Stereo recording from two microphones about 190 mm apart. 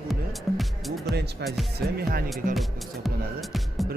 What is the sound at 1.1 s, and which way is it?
Speech, 60° right (ahead or behind).